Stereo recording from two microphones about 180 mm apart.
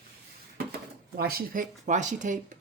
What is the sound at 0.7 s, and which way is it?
Speech, 60° right (ahead or behind).